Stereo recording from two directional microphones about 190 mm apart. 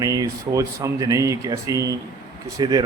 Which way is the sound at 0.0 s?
15° right (ahead or behind).